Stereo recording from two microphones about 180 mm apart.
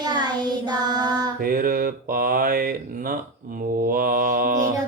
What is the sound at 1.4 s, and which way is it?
Speech, 55° right (ahead or behind).